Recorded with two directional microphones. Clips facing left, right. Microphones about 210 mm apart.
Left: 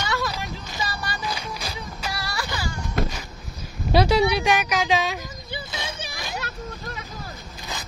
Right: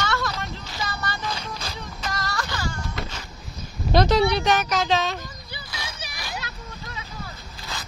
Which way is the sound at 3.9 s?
10° left (ahead or behind).